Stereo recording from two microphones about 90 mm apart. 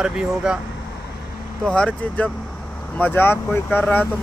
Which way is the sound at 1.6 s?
10° left (ahead or behind).